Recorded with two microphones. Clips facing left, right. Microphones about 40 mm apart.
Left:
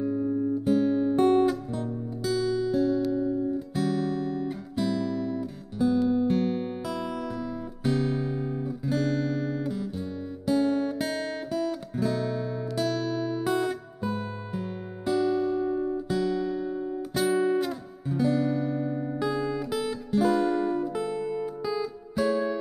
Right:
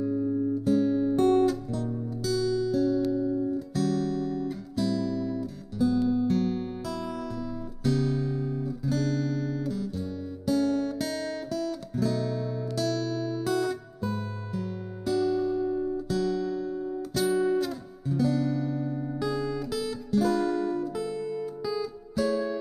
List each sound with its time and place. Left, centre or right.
0.0 s music: left
3.1 s guitar: left
6.0 s music: left
7.8 s guitar: left